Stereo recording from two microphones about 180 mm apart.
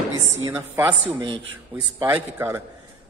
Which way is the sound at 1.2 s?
25° right (ahead or behind).